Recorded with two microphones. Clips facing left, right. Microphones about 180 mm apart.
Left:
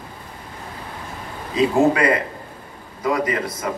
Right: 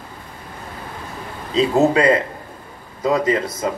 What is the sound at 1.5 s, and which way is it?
Speech, 25° right (ahead or behind).